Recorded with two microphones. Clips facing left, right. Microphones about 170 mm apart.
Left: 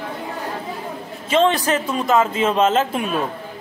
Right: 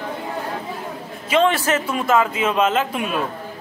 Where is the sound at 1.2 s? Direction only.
20° left (ahead or behind).